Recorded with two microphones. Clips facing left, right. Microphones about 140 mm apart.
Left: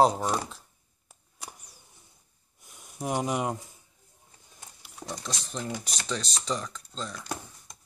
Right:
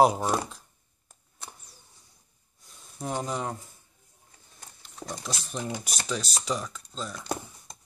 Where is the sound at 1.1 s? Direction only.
10° left (ahead or behind).